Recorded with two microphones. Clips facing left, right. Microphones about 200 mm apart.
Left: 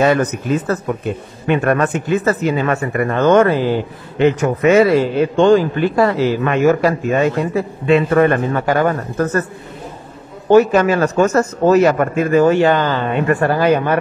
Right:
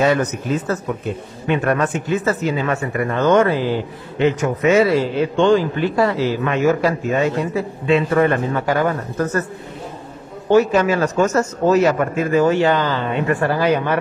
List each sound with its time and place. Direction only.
0.0 s a man's voice: 55° left (ahead or behind)
10.5 s a man's voice: 55° left (ahead or behind)